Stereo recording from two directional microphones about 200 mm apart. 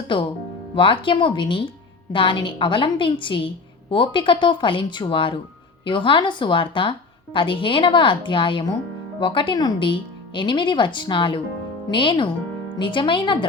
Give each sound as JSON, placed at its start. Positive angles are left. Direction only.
{"t": 0.1, "sound": "a woman's voice", "side_deg": 25}